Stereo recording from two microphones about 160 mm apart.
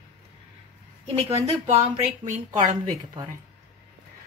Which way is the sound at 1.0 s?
35° right (ahead or behind).